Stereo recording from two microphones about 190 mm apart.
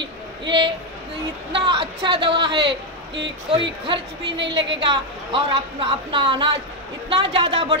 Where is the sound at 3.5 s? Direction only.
25° right (ahead or behind).